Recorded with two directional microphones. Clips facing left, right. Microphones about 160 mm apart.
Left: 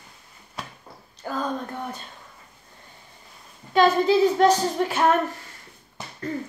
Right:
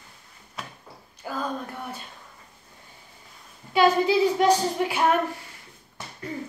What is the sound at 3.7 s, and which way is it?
A woman's voice, 10° right (ahead or behind).